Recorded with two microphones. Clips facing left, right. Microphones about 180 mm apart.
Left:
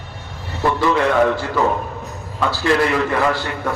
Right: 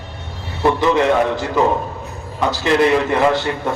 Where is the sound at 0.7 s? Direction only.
20° right (ahead or behind).